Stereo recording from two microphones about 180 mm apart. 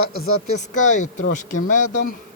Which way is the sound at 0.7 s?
45° left (ahead or behind).